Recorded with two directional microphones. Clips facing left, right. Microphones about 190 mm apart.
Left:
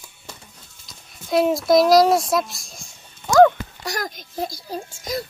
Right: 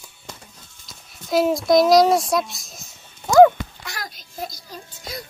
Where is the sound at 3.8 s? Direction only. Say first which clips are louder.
Left 7 dB; 40° left (ahead or behind).